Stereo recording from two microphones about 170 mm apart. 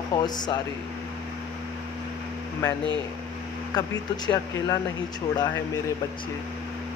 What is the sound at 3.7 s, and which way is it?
Speech, 25° left (ahead or behind).